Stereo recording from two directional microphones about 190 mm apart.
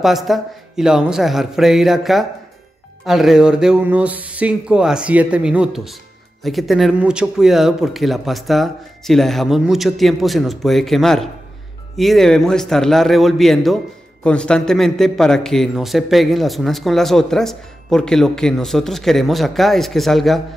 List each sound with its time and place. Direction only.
0.0 s a man's voice: centre (ahead or behind)